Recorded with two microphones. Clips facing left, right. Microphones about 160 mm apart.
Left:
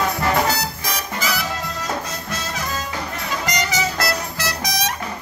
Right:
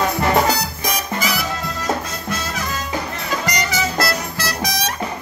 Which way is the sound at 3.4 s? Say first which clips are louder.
Left 1 dB; 20° left (ahead or behind).